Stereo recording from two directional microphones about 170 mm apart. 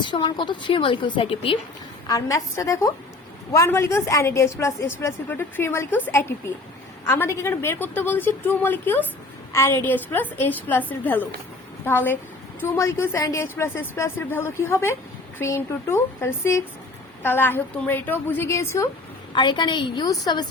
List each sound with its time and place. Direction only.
0.0 s a woman's voice: 25° left (ahead or behind)
2.0 s a woman's voice: 20° left (ahead or behind)
19.3 s a woman's voice: 25° left (ahead or behind)